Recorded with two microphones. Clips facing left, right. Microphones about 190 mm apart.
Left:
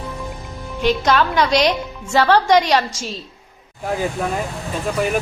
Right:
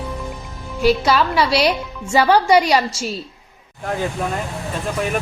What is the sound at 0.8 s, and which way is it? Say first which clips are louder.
A woman's voice: right 1 dB; 10° right (ahead or behind).